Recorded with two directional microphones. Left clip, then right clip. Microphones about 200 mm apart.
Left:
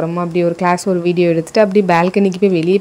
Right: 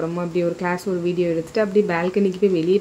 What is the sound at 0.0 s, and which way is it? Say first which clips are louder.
Speech: left 6 dB; 30° left (ahead or behind).